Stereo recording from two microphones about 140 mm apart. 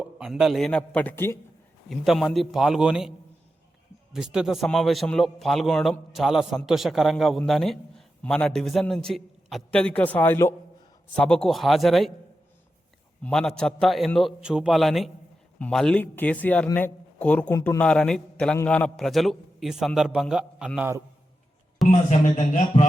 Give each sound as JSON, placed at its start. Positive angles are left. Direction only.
{"t": 0.0, "sound": "a man's voice", "side_deg": -5}
{"t": 1.9, "sound": "a man's voice", "side_deg": 0}
{"t": 4.1, "sound": "a man's voice", "side_deg": -5}
{"t": 13.2, "sound": "a man's voice", "side_deg": 5}
{"t": 21.8, "sound": "speech", "side_deg": 60}